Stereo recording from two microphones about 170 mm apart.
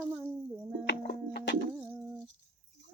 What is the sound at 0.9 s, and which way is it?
Music, 75° left (ahead or behind).